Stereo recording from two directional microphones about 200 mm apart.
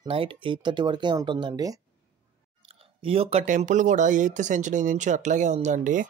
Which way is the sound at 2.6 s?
30° right (ahead or behind).